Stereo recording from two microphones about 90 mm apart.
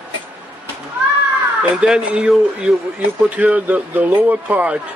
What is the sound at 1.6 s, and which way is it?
Speech, 10° right (ahead or behind).